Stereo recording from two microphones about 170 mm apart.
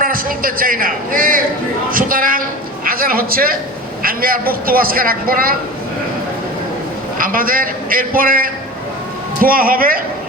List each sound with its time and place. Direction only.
0.0 s a man's voice: 55° right (ahead or behind)
7.2 s a man's voice: 55° right (ahead or behind)